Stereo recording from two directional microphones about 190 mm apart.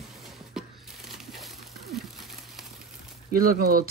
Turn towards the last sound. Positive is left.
turn(degrees=-50)  # may be behind; listen again after turning